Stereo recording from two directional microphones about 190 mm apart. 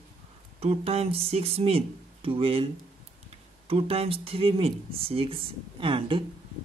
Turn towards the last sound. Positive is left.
turn(degrees=-30)  # may be behind; listen again after turning